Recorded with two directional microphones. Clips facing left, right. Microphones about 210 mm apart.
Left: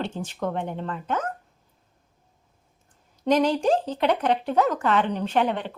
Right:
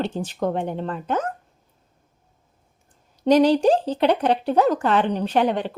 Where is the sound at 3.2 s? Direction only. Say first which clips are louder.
Right 5 dB; 35° right (ahead or behind).